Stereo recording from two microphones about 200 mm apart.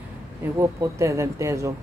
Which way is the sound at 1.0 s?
15° right (ahead or behind).